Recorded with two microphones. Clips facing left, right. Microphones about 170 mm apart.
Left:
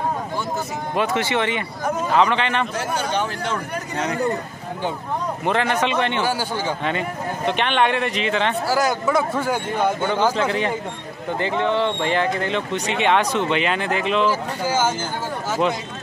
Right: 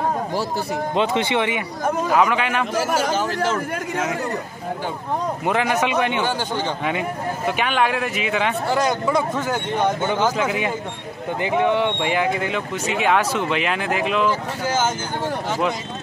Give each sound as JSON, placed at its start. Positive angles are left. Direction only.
{"t": 0.9, "sound": "speech", "side_deg": -20}
{"t": 5.4, "sound": "speech", "side_deg": -10}
{"t": 6.2, "sound": "a man's voice", "side_deg": 10}
{"t": 6.8, "sound": "speech", "side_deg": -10}
{"t": 8.6, "sound": "speech", "side_deg": 5}
{"t": 10.3, "sound": "speech", "side_deg": -10}
{"t": 14.6, "sound": "a man's voice", "side_deg": 10}